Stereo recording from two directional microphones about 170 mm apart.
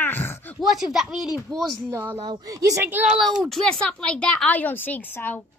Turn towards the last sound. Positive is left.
turn(degrees=10)  # may be behind; listen again after turning